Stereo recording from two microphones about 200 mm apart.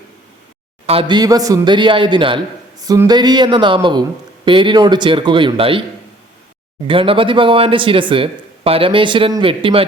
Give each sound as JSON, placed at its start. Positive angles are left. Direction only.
{"t": 0.9, "sound": "speech", "side_deg": -25}
{"t": 6.8, "sound": "speech", "side_deg": -25}